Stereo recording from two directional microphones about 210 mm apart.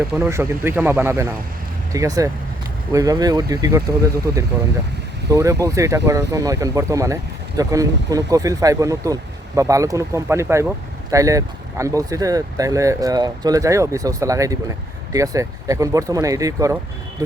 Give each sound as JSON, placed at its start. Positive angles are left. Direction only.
{"t": 0.2, "sound": "speech", "side_deg": -10}